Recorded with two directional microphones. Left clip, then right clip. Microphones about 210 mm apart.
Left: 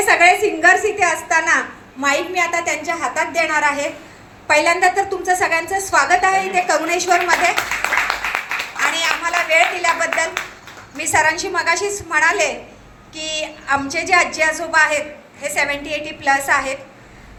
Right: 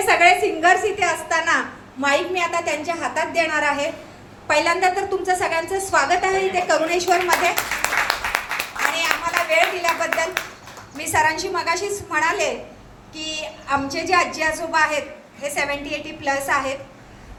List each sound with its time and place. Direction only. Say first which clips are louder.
0.0 s a woman's voice: left 3 dB; 35° left (ahead or behind)
9.0 s clapping: left 2 dB; 35° left (ahead or behind)
10.9 s a woman's voice: left 3 dB; 35° left (ahead or behind)